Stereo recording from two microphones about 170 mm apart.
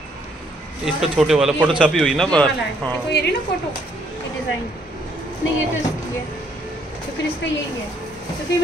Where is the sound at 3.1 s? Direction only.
80° left.